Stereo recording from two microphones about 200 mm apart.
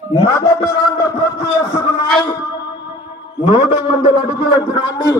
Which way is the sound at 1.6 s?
10° left (ahead or behind).